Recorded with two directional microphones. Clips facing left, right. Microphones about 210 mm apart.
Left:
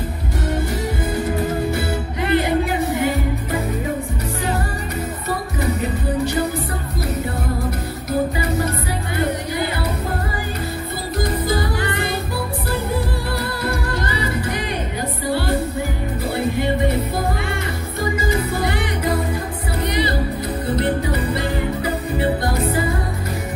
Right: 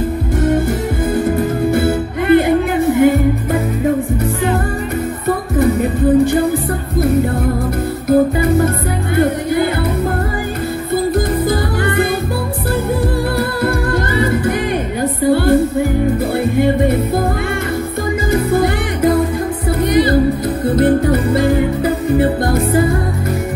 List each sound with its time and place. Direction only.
1.1 s music: 50° right (ahead or behind)
5.6 s music: 50° right (ahead or behind)
8.1 s music: 50° right (ahead or behind)
11.1 s music: 50° right (ahead or behind)
13.4 s music: 50° right (ahead or behind)
18.3 s music: 50° right (ahead or behind)